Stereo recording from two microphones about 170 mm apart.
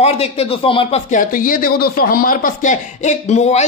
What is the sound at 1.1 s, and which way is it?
Speech, 50° left (ahead or behind).